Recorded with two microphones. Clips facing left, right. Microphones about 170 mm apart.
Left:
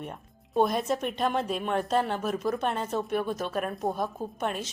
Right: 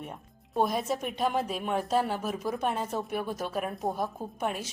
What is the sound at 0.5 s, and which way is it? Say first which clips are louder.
Speech: left 3 dB; 5° right (ahead or behind).